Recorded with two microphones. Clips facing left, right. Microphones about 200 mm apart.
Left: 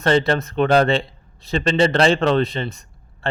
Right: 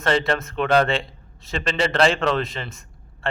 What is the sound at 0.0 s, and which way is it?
Speech, 35° left (ahead or behind).